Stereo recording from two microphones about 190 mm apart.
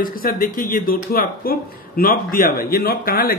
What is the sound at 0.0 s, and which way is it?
Speech, 50° left (ahead or behind).